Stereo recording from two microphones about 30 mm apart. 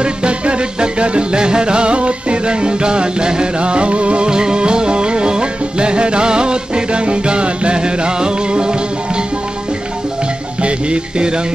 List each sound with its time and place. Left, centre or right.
0.0 s music: right
4.3 s music: right
10.6 s music: right